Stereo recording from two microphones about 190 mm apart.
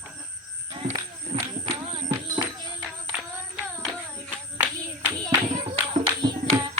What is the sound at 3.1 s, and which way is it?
Music, 5° right (ahead or behind).